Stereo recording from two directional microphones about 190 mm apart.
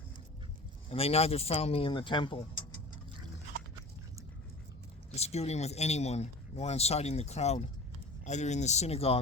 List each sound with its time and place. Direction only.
0.9 s speech: 30° left (ahead or behind)
5.1 s speech: 35° left (ahead or behind)